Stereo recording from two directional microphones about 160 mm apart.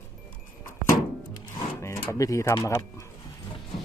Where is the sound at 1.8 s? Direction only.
15° left (ahead or behind).